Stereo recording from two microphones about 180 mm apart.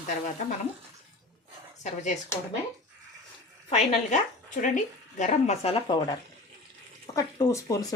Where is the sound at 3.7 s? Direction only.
40° left (ahead or behind).